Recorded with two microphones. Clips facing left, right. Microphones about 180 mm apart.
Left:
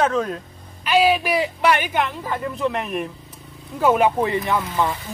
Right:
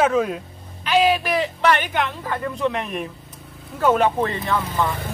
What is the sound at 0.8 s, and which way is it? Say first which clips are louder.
A man's voice: left 1 dB; 10° left (ahead or behind).